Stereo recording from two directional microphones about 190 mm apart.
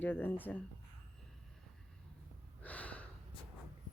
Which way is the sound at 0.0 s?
10° left (ahead or behind).